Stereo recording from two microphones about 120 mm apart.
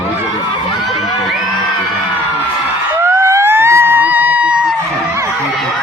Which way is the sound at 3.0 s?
25° right (ahead or behind).